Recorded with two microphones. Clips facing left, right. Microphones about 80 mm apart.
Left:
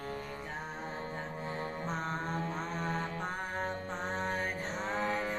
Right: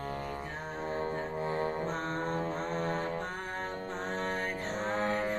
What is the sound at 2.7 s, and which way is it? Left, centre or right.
Mantra, right.